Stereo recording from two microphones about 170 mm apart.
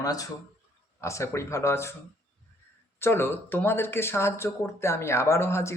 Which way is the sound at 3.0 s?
15° left (ahead or behind).